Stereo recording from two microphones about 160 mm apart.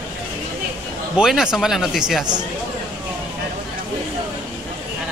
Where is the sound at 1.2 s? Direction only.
5° right (ahead or behind).